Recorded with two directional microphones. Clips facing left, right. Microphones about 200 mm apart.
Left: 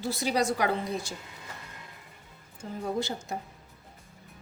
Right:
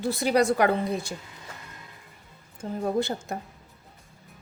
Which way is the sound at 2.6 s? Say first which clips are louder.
Right 5 dB; 55° right (ahead or behind).